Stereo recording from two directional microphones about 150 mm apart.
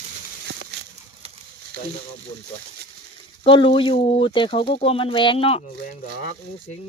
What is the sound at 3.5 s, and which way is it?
Speech, 35° left (ahead or behind).